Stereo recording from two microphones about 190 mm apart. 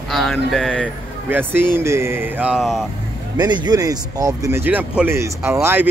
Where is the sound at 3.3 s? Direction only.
20° right (ahead or behind).